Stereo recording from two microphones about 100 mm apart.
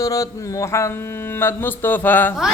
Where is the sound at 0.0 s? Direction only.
35° left (ahead or behind).